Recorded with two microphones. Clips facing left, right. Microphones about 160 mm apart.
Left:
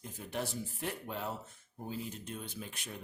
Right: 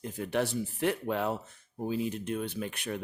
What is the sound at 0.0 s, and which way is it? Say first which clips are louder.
Speech: right 9 dB; 75° right (ahead or behind).